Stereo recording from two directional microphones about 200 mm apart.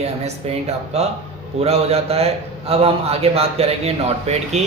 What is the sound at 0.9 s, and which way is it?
A man's voice, 35° right (ahead or behind).